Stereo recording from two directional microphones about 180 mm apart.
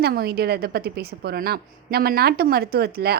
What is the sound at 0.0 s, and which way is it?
A woman's voice, 60° right (ahead or behind).